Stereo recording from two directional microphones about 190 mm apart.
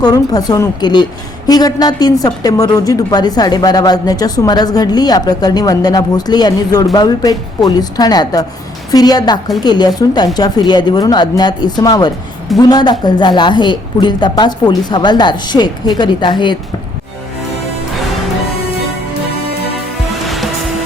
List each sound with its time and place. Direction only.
0.0 s a woman's voice: 20° left (ahead or behind)
20.2 s music: centre (ahead or behind)